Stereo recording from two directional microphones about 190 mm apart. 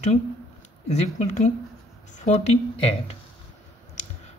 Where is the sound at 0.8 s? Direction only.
35° left (ahead or behind).